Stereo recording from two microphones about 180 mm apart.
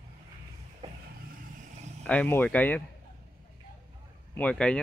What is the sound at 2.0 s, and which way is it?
Speech, 10° left (ahead or behind).